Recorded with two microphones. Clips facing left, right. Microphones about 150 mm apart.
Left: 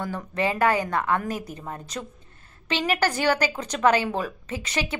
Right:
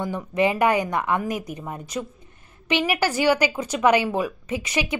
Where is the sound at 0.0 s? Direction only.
15° right (ahead or behind).